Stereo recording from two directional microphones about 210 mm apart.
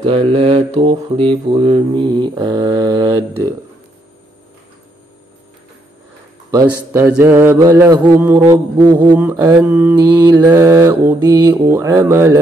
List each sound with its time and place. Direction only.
0.0 s mantra: 25° right (ahead or behind)
6.5 s mantra: 15° right (ahead or behind)